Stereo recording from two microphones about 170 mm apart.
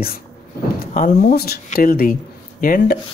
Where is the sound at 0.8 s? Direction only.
50° left (ahead or behind).